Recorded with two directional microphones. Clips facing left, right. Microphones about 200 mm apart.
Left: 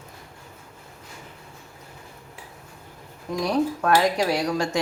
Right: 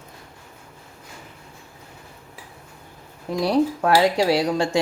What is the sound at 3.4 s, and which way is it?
Speech, 30° right (ahead or behind).